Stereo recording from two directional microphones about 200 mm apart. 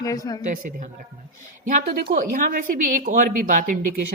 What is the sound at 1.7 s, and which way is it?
A woman's voice, 40° right (ahead or behind).